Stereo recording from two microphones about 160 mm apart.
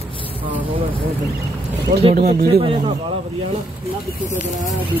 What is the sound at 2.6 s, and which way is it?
Speech, 30° right (ahead or behind).